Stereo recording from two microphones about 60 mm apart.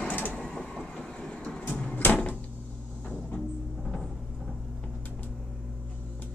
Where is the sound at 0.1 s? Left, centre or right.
Left.